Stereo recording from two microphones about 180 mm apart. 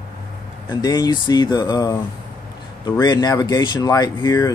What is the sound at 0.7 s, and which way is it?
Speech, 20° left (ahead or behind).